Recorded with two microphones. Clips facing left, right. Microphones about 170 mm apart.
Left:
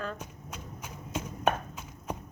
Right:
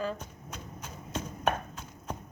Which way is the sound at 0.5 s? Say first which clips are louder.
Even; 10° left (ahead or behind).